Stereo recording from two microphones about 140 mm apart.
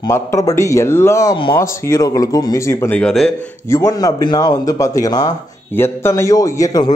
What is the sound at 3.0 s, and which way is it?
Speech, 5° left (ahead or behind).